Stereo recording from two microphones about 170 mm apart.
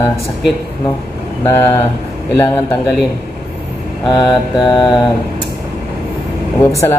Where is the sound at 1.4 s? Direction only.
15° left (ahead or behind).